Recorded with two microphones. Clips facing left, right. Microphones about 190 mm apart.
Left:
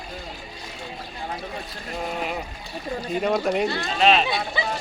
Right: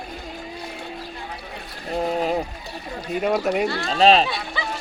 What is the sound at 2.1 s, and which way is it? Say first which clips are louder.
Speech: right 7 dB; 35° right (ahead or behind).